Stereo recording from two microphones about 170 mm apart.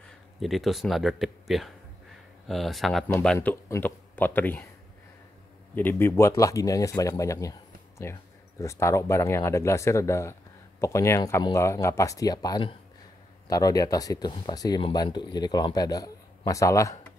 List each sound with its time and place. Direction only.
0.4 s speech: centre (ahead or behind)
3.1 s speech: 10° left (ahead or behind)
5.8 s speech: 10° left (ahead or behind)